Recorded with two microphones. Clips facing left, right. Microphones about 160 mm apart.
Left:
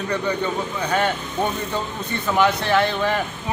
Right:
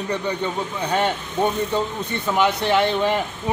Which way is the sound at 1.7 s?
20° right (ahead or behind).